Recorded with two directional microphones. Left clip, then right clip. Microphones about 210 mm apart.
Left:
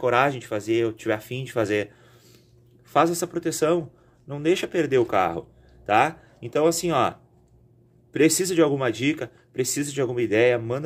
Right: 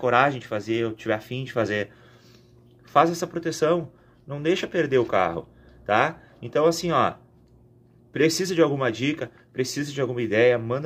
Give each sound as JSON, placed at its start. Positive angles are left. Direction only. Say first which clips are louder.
{"t": 0.0, "sound": "a man's voice", "louder": "right 1 dB", "side_deg": 15}
{"t": 2.9, "sound": "a man's voice", "louder": "right 1 dB", "side_deg": 15}